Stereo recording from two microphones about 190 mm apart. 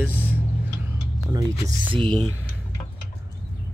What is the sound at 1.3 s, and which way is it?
Speech, 25° right (ahead or behind).